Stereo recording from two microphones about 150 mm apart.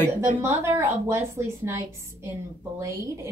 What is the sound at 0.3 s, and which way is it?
A woman's voice, 15° right (ahead or behind).